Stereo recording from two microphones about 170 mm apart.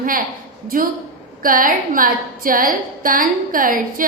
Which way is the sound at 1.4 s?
55° right (ahead or behind).